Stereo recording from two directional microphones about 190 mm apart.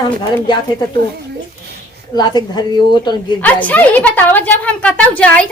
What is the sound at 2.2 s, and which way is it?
Speech, 20° left (ahead or behind).